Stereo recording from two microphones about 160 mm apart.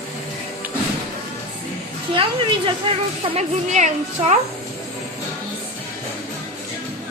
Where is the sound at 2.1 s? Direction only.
35° right (ahead or behind).